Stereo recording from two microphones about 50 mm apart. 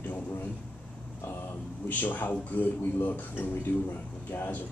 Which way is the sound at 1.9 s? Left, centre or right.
Left.